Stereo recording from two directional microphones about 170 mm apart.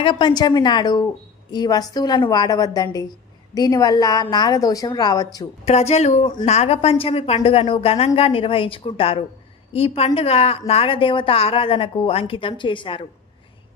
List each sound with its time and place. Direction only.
0.0 s a woman's voice: 25° left (ahead or behind)
5.7 s a woman's voice: 40° left (ahead or behind)